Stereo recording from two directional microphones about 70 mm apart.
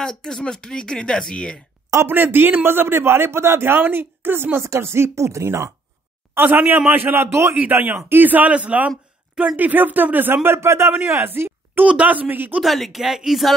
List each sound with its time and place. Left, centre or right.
0.0 s speech: centre
2.0 s a man's voice: right
6.3 s a man's voice: right
7.8 s speech: right
11.8 s speech: right
12.6 s speech: centre